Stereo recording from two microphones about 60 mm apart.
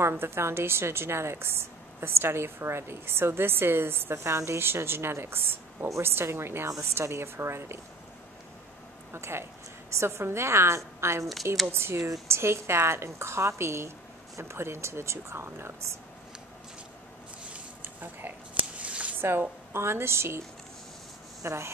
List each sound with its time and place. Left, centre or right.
0.1 s a woman's voice: right
4.3 s a woman's voice: right
4.6 s a woman's voice: right
9.1 s a woman's voice: right
18.0 s a sound: right
19.7 s a woman's voice: right